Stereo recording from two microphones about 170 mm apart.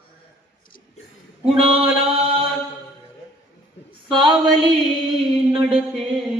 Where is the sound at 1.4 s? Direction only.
35° right (ahead or behind).